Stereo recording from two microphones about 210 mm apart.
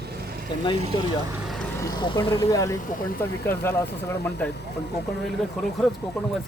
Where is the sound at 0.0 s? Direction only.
50° right (ahead or behind).